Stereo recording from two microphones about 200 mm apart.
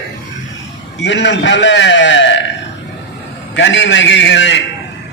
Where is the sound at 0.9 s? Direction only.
65° left (ahead or behind).